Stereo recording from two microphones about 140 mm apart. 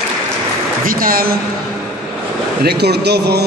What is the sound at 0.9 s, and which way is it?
Speech, 90° right.